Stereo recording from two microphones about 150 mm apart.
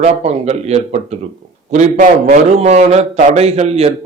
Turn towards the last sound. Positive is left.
turn(degrees=-45)  # may be behind; listen again after turning